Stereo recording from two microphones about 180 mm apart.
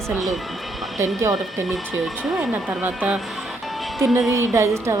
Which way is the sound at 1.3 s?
Centre (ahead or behind).